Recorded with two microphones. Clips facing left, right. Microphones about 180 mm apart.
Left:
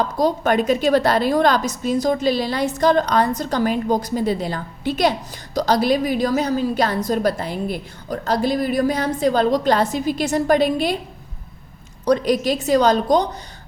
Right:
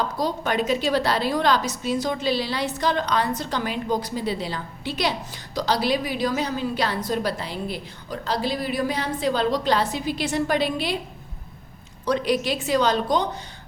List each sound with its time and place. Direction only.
0.2 s a woman's voice: 50° left (ahead or behind)
12.0 s a woman's voice: 40° left (ahead or behind)